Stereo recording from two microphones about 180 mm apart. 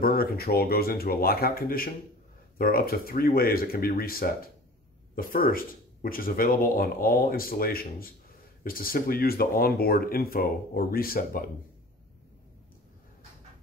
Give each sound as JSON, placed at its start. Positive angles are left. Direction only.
{"t": 0.0, "sound": "speech", "side_deg": 55}